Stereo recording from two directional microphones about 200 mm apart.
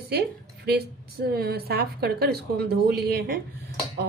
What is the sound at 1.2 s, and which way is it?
Speech, 50° right (ahead or behind).